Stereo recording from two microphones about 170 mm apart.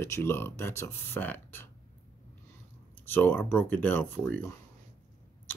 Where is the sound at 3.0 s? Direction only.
10° left (ahead or behind).